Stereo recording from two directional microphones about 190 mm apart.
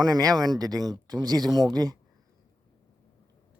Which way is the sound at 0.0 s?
20° right (ahead or behind).